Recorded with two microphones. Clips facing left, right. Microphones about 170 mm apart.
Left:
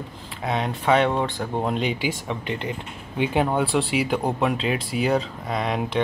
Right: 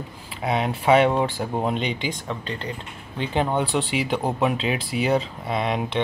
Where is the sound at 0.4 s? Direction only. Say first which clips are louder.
Right 2 dB; 10° right (ahead or behind); by 2.7 s 15° left (ahead or behind).